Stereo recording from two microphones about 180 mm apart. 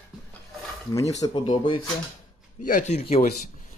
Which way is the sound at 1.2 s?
25° left (ahead or behind).